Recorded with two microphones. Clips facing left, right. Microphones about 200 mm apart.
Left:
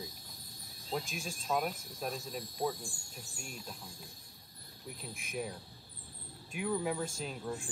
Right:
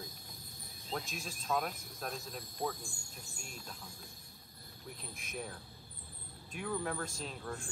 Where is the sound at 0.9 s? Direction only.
Centre (ahead or behind).